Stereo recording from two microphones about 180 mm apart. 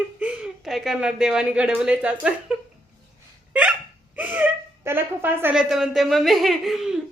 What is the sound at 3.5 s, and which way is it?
Hiccup, 5° right (ahead or behind).